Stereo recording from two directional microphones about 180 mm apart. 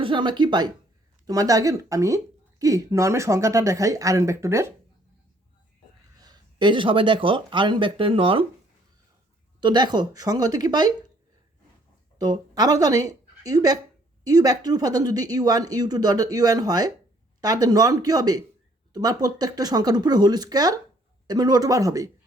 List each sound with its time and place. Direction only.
0.0 s speech: 25° right (ahead or behind)
6.1 s speech: 20° right (ahead or behind)
9.6 s speech: 25° right (ahead or behind)
12.2 s speech: 20° right (ahead or behind)